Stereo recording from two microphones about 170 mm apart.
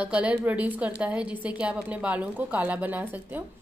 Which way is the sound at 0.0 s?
10° right (ahead or behind).